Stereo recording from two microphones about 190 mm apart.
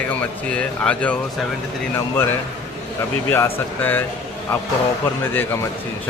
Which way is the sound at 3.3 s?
10° left (ahead or behind).